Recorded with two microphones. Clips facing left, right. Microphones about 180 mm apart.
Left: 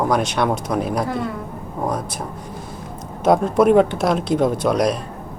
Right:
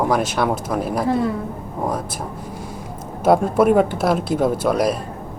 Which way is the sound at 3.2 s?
5° right (ahead or behind).